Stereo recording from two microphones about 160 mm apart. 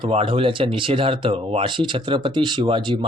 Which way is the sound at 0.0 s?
35° right (ahead or behind).